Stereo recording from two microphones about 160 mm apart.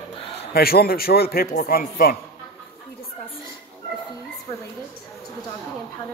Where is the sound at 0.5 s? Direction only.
70° left (ahead or behind).